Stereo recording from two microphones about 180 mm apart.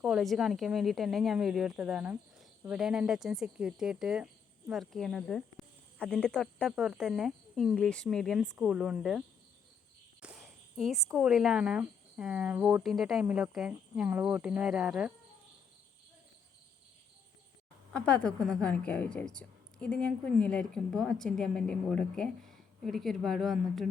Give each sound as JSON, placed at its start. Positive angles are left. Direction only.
{"t": 0.0, "sound": "speech", "side_deg": 0}
{"t": 10.2, "sound": "a sound", "side_deg": -5}
{"t": 11.1, "sound": "speech", "side_deg": 0}
{"t": 17.9, "sound": "speech", "side_deg": 5}